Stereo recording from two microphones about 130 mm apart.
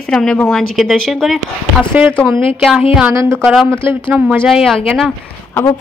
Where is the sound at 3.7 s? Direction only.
20° right (ahead or behind).